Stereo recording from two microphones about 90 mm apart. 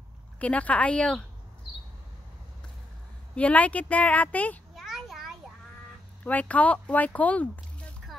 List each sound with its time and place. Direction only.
0.4 s speech: 15° left (ahead or behind)
3.3 s speech: 15° left (ahead or behind)
4.7 s a sound: centre (ahead or behind)
6.2 s speech: 15° left (ahead or behind)